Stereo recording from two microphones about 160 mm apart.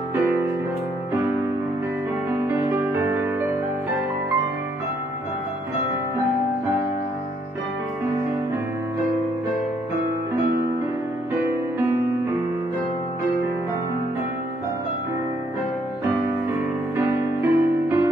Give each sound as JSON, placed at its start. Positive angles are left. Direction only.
{"t": 2.4, "sound": "music", "side_deg": -15}
{"t": 16.9, "sound": "music", "side_deg": -15}